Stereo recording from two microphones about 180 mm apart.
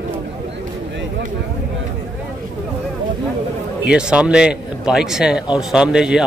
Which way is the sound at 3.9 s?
5° right (ahead or behind).